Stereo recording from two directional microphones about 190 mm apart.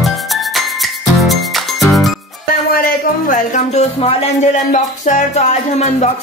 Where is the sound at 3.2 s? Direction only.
45° left (ahead or behind).